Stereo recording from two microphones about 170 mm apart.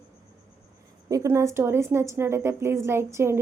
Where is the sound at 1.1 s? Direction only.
15° right (ahead or behind).